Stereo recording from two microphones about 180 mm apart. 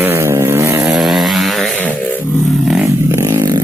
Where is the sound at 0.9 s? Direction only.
Centre (ahead or behind).